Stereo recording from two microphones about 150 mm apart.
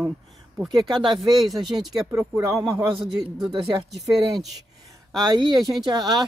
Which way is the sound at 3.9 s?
Centre (ahead or behind).